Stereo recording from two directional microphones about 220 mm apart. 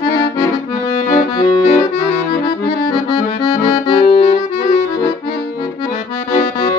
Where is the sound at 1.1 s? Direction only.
40° left (ahead or behind).